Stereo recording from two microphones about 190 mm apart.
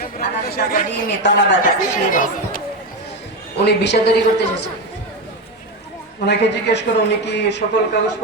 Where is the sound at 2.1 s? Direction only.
45° left (ahead or behind).